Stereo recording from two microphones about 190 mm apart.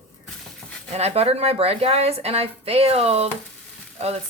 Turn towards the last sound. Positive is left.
turn(degrees=-35)  # may be behind; listen again after turning